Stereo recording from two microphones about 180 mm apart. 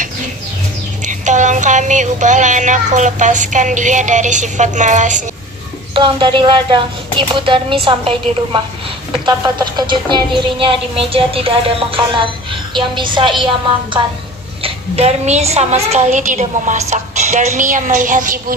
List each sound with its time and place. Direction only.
1.0 s child singing: 45° right (ahead or behind)
5.9 s speech: 25° right (ahead or behind)
9.2 s speech: 25° right (ahead or behind)
14.6 s a woman's voice: 35° right (ahead or behind)